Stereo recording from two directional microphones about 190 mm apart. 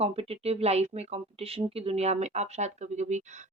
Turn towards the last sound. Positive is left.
turn(degrees=-35)  # may be behind; listen again after turning